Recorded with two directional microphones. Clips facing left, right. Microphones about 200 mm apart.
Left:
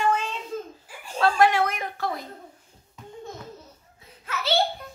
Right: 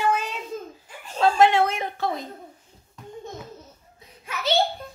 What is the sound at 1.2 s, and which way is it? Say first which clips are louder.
A woman's voice: right 2 dB; 25° right (ahead or behind).